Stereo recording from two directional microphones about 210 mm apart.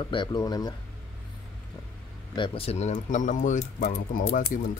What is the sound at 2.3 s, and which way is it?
Speech, 25° left (ahead or behind).